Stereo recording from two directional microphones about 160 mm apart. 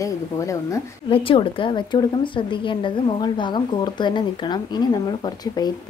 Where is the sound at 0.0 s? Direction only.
20° left (ahead or behind).